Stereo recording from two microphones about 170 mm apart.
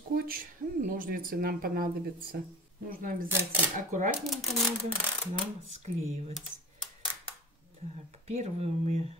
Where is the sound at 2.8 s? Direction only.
55° right (ahead or behind).